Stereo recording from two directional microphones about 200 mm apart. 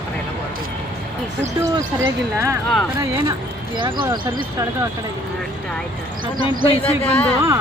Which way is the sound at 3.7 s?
25° right (ahead or behind).